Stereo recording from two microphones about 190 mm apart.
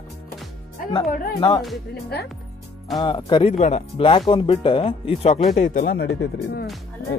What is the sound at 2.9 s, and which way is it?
Speech, 25° left (ahead or behind).